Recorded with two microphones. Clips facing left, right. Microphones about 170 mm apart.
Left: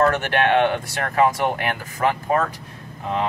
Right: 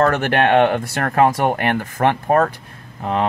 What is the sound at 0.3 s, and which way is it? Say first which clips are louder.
Speech: right 4 dB; 55° right (ahead or behind).